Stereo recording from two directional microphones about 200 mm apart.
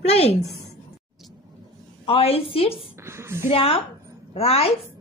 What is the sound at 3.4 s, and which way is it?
A woman's voice, 30° left (ahead or behind).